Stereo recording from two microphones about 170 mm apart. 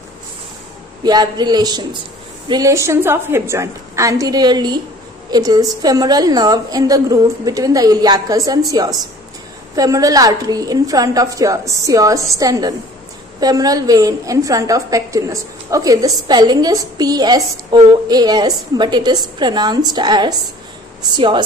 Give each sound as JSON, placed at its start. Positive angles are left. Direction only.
{"t": 1.0, "sound": "a woman's voice", "side_deg": -25}